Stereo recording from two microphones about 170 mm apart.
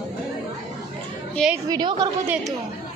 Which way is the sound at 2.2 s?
5° right (ahead or behind).